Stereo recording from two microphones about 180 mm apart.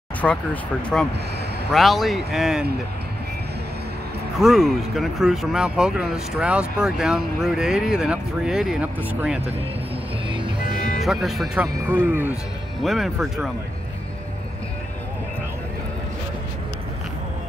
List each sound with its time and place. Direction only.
0.2 s speech: centre (ahead or behind)
4.4 s speech: centre (ahead or behind)
10.6 s music: 55° left (ahead or behind)
11.0 s speech: centre (ahead or behind)
11.7 s speech: 15° right (ahead or behind)
12.8 s speech: centre (ahead or behind)